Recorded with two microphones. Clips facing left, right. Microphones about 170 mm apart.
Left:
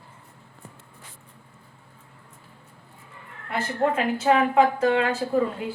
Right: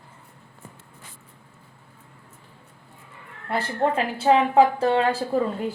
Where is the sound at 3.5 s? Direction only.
30° right (ahead or behind).